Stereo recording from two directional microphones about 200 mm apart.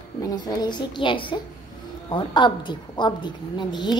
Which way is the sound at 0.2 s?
20° left (ahead or behind).